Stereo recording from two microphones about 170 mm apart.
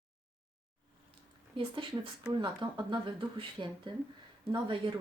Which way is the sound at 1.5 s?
30° right (ahead or behind).